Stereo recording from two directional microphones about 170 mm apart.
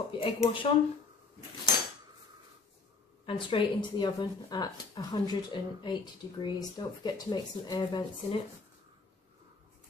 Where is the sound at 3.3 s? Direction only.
30° left (ahead or behind).